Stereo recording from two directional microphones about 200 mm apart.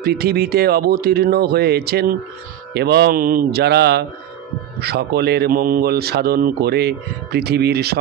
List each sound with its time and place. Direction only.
0.0 s a man's voice: 50° right (ahead or behind)